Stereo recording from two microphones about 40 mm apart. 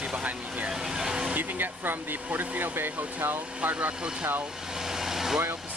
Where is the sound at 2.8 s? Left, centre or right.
Right.